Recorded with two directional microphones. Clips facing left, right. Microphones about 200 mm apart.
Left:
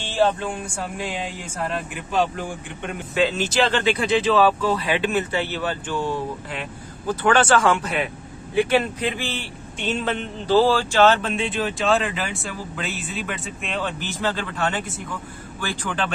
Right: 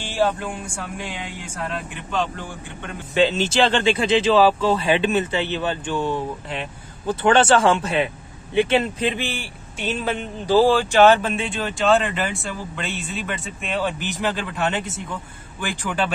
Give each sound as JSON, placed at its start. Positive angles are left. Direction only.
{"t": 1.6, "sound": "speech", "side_deg": 5}
{"t": 3.2, "sound": "a man's voice", "side_deg": -25}
{"t": 11.3, "sound": "speech", "side_deg": 0}
{"t": 13.8, "sound": "a man's voice", "side_deg": -15}
{"t": 15.6, "sound": "a man's voice", "side_deg": -10}